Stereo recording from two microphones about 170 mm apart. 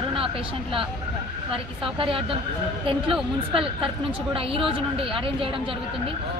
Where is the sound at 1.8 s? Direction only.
30° right (ahead or behind).